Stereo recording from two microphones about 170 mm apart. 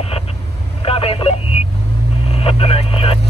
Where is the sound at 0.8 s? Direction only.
35° left (ahead or behind).